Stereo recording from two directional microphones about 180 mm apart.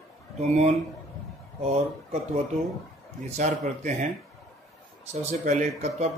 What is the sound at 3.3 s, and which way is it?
Speech, 40° right (ahead or behind).